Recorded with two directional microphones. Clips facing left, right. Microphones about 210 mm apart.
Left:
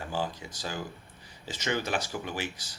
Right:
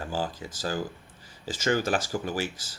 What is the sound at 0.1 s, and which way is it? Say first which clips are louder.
Speech: even; 40° right (ahead or behind).